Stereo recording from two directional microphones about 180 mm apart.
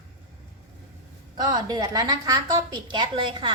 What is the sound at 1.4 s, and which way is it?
A woman's voice, 20° right (ahead or behind).